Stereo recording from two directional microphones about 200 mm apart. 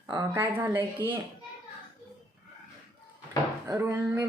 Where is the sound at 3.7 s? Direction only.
15° right (ahead or behind).